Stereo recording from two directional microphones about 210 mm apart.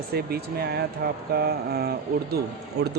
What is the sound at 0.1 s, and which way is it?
Speech, 50° right (ahead or behind).